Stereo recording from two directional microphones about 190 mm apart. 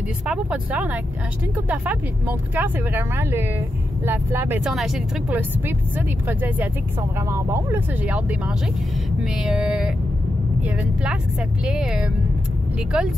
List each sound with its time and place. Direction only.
0.3 s speech: 5° right (ahead or behind)
9.2 s music: 5° right (ahead or behind)
10.6 s speech: 5° right (ahead or behind)
11.6 s music: 5° right (ahead or behind)